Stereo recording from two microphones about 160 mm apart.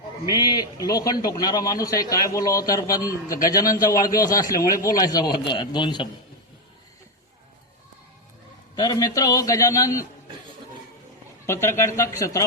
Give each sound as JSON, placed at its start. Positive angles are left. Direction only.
{"t": 0.4, "sound": "a man's voice", "side_deg": 25}
{"t": 8.7, "sound": "a man's voice", "side_deg": 25}
{"t": 11.4, "sound": "speech", "side_deg": 15}